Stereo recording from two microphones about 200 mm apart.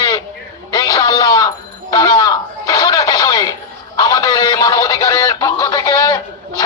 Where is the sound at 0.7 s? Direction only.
20° left (ahead or behind).